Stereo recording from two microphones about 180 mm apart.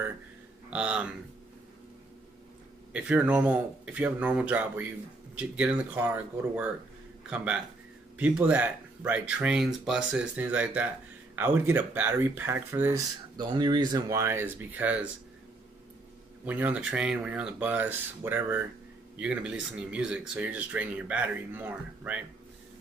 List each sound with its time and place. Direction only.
0.7 s speech: 5° right (ahead or behind)
2.9 s speech: 5° right (ahead or behind)
13.4 s speech: 25° right (ahead or behind); by 15.0 s 10° right (ahead or behind)
16.4 s speech: 10° right (ahead or behind)